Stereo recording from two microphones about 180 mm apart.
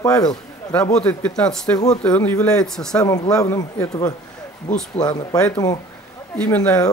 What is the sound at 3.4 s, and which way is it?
Speech, 15° left (ahead or behind).